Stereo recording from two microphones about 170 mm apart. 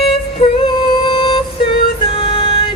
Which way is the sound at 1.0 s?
30° left (ahead or behind).